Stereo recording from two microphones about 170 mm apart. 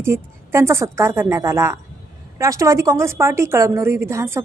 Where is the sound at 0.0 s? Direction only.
15° right (ahead or behind).